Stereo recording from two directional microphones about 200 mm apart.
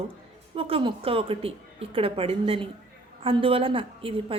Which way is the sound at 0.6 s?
25° right (ahead or behind).